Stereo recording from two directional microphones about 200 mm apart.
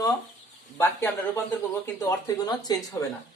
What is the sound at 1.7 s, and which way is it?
Speech, 15° left (ahead or behind).